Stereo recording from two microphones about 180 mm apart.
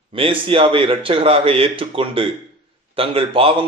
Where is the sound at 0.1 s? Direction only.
30° right (ahead or behind).